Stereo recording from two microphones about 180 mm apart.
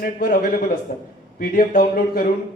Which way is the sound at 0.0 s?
50° left (ahead or behind).